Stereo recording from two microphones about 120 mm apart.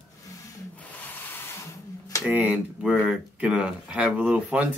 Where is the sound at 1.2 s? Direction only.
20° left (ahead or behind).